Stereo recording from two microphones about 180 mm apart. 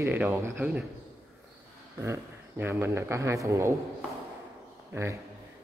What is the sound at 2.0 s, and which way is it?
Speech, 15° right (ahead or behind).